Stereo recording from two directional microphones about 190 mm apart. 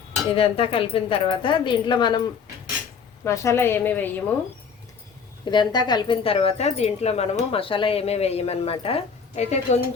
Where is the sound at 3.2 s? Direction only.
15° left (ahead or behind).